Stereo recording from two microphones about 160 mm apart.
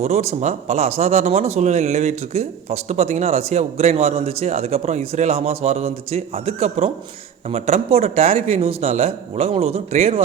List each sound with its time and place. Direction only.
0.0 s a man's voice: 40° right (ahead or behind)